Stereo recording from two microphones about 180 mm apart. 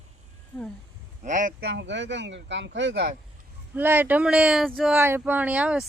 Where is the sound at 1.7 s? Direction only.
80° right.